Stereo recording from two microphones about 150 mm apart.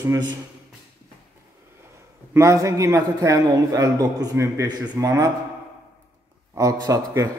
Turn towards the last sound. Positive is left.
turn(degrees=-20)  # may be behind; listen again after turning